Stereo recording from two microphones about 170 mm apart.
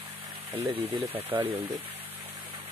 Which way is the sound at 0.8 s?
10° right (ahead or behind).